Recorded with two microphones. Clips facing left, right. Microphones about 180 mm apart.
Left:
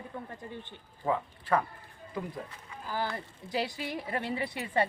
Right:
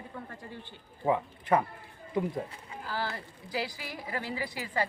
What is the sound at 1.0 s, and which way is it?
Speech, 15° right (ahead or behind).